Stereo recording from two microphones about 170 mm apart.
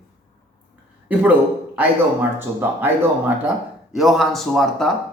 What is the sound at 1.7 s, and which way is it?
Speech, 10° right (ahead or behind).